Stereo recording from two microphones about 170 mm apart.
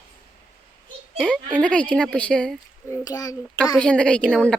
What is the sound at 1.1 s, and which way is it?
A woman's voice, centre (ahead or behind).